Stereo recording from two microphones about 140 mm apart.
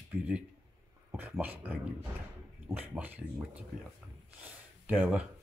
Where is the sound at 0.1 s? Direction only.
10° right (ahead or behind).